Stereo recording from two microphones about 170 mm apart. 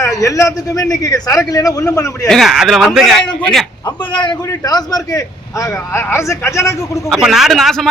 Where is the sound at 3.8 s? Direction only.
30° left (ahead or behind).